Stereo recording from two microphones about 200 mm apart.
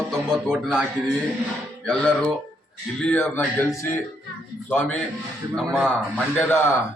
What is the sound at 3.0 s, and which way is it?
A man's voice, 10° left (ahead or behind).